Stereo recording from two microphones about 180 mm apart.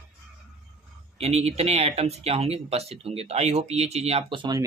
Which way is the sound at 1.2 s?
35° right (ahead or behind).